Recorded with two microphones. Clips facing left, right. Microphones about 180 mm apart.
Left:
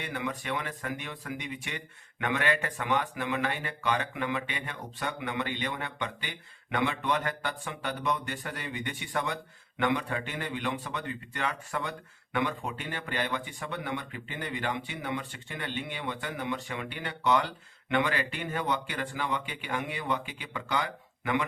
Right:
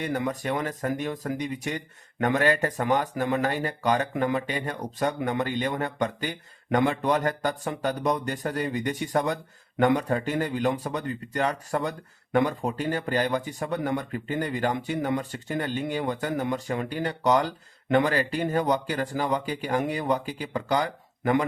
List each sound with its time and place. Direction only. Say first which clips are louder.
0.0 s speech: right 7 dB; 40° right (ahead or behind)